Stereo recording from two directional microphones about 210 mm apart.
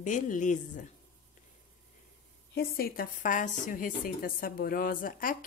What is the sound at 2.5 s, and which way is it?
A woman's voice, 45° left (ahead or behind).